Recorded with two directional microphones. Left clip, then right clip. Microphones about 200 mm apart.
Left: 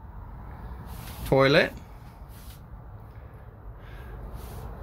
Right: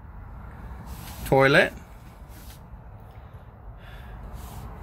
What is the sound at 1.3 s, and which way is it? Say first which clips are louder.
Speech: right 2 dB; centre (ahead or behind).